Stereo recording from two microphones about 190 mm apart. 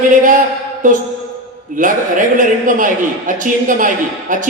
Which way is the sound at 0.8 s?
45° right (ahead or behind).